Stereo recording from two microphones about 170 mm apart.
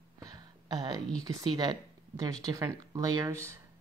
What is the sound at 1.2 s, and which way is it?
Speech, 20° right (ahead or behind).